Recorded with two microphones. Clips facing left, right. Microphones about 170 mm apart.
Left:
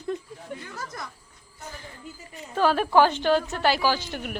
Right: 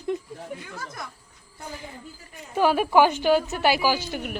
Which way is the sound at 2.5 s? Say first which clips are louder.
Right 1 dB; 10° right (ahead or behind).